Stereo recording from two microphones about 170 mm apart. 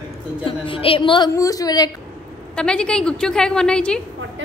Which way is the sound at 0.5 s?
30° left (ahead or behind).